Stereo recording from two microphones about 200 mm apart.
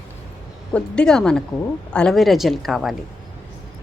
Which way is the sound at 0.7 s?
5° left (ahead or behind).